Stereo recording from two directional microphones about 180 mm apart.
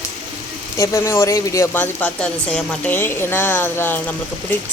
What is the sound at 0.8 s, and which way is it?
A woman's voice, 15° left (ahead or behind).